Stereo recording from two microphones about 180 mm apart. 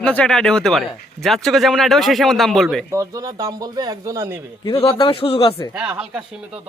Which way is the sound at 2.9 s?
20° right (ahead or behind).